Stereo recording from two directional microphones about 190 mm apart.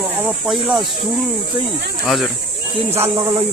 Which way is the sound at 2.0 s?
Centre (ahead or behind).